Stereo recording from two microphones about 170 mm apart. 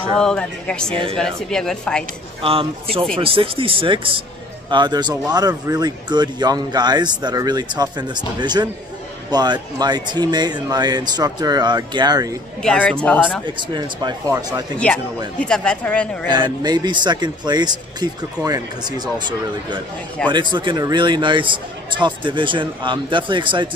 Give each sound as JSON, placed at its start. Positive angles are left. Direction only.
{"t": 0.2, "sound": "speech", "side_deg": 5}
{"t": 2.4, "sound": "speech", "side_deg": -35}
{"t": 12.6, "sound": "a woman's voice", "side_deg": 5}
{"t": 13.6, "sound": "speech", "side_deg": -25}
{"t": 15.3, "sound": "a woman's voice", "side_deg": 5}
{"t": 16.3, "sound": "speech", "side_deg": -25}
{"t": 20.2, "sound": "speech", "side_deg": -25}